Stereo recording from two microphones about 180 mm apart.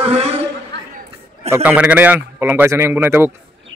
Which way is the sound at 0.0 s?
35° right (ahead or behind).